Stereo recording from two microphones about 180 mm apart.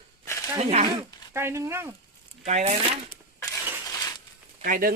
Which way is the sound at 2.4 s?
40° right (ahead or behind).